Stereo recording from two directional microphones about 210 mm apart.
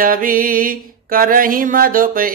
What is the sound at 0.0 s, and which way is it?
Mantra, 40° right (ahead or behind).